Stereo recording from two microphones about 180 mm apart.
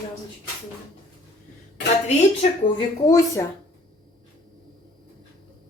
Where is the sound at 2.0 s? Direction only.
35° left (ahead or behind).